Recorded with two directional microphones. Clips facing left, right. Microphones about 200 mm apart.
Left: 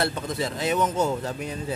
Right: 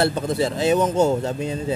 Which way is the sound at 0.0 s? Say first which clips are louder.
Right 6 dB; 30° right (ahead or behind).